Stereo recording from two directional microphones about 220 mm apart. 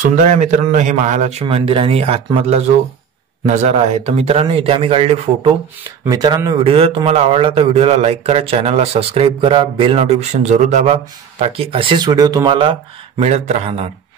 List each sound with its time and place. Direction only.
0.0 s speech: 35° right (ahead or behind)